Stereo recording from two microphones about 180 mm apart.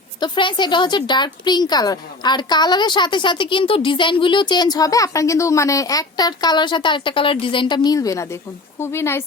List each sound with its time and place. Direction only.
0.2 s a woman's voice: 25° left (ahead or behind)